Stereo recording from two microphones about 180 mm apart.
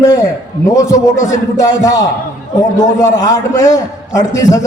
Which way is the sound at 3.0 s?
20° left (ahead or behind).